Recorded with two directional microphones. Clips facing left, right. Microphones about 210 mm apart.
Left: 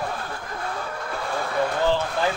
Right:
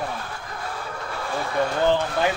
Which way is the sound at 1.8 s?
15° right (ahead or behind).